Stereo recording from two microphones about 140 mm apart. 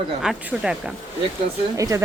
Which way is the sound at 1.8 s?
25° right (ahead or behind).